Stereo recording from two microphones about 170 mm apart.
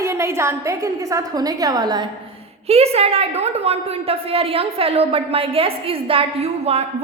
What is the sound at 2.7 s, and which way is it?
A woman's voice, 35° right (ahead or behind).